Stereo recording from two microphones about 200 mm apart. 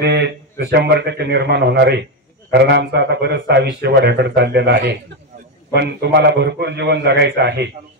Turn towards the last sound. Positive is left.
turn(degrees=-55)  # may be behind; listen again after turning